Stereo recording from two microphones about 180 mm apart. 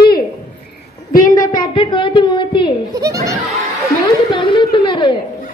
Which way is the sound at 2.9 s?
20° right (ahead or behind).